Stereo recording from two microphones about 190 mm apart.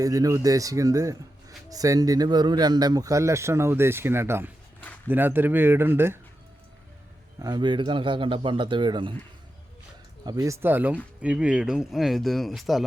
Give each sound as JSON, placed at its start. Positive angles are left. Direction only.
{"t": 0.0, "sound": "speech", "side_deg": -20}
{"t": 7.3, "sound": "a man's voice", "side_deg": -20}
{"t": 10.2, "sound": "speech", "side_deg": -20}